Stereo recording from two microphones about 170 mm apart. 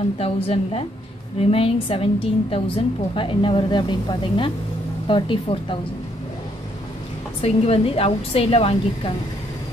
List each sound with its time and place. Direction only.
0.2 s a woman's voice: 35° left (ahead or behind)
7.4 s a woman's voice: 35° left (ahead or behind)